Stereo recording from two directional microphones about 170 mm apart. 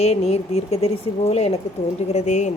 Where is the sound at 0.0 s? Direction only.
35° left (ahead or behind).